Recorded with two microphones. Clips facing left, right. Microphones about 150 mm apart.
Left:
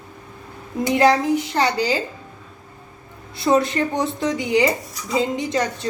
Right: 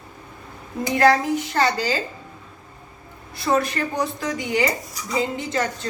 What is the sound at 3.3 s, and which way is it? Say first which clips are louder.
A woman's voice: left 4 dB; 20° left (ahead or behind).